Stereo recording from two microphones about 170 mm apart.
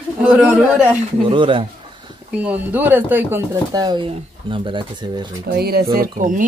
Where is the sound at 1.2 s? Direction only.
30° right (ahead or behind).